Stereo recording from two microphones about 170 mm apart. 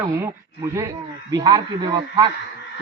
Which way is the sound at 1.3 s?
25° right (ahead or behind).